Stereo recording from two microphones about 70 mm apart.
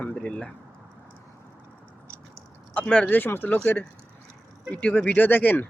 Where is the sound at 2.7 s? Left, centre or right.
Centre.